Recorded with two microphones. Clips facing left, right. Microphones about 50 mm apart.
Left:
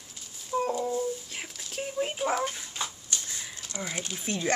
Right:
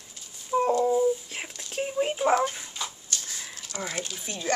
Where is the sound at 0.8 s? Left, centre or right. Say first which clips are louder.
Right 7 dB; centre.